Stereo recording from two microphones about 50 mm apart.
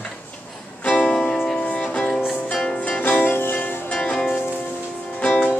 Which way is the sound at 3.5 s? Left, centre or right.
Left.